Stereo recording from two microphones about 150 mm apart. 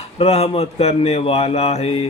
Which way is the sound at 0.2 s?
45° left (ahead or behind).